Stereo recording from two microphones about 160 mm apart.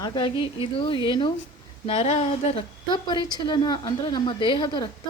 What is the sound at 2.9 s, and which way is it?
A woman's voice, 25° left (ahead or behind).